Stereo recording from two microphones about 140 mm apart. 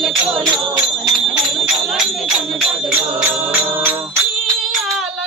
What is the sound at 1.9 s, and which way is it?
Music, centre (ahead or behind).